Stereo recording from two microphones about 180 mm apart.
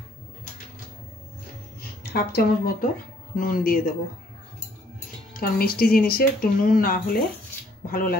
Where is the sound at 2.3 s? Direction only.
55° left (ahead or behind).